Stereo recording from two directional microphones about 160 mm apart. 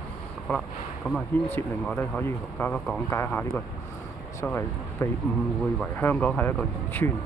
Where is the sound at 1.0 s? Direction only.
5° left (ahead or behind).